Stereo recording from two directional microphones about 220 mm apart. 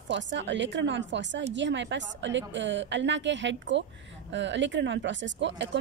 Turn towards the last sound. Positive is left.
turn(degrees=-55)  # may be behind; listen again after turning